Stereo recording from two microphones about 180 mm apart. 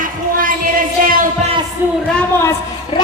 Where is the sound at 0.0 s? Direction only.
50° right (ahead or behind).